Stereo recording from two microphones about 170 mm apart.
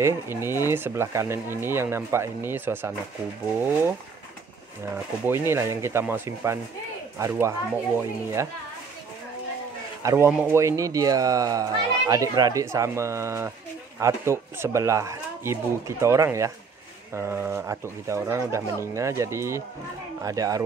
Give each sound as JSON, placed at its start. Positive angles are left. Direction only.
{"t": 0.0, "sound": "speech", "side_deg": -15}
{"t": 4.9, "sound": "speech", "side_deg": -10}
{"t": 10.0, "sound": "speech", "side_deg": -15}